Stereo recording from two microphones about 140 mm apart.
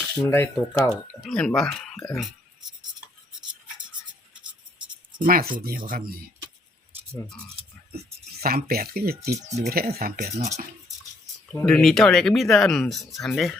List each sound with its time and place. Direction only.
0.3 s speech: 15° left (ahead or behind)
0.8 s speech: 5° right (ahead or behind)
5.2 s speech: 90° right
7.6 s a sound: 45° right (ahead or behind)
8.4 s speech: 90° right
9.4 s speech: 55° right (ahead or behind)
9.6 s speech: 90° right; by 10.7 s 70° right (ahead or behind)
11.5 s speech: 5° left (ahead or behind)